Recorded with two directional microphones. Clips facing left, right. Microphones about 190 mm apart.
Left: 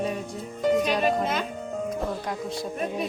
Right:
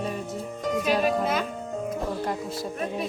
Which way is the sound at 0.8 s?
5° right (ahead or behind).